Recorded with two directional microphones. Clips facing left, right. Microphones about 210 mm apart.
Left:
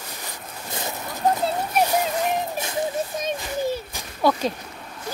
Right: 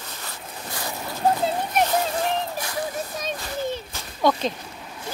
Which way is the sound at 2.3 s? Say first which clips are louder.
Left 1 dB; 20° left (ahead or behind).